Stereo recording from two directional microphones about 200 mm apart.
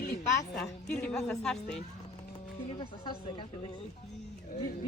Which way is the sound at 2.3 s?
25° left (ahead or behind).